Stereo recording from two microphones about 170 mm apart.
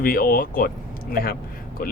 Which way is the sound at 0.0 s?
60° left (ahead or behind).